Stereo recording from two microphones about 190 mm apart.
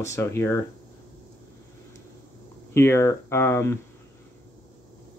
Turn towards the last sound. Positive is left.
turn(degrees=15)  # may be behind; listen again after turning